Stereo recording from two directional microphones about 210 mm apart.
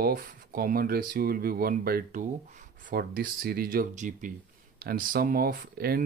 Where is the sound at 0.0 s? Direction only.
45° right (ahead or behind).